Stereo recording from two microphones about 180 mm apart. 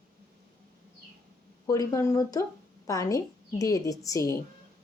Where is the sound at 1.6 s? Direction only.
20° left (ahead or behind).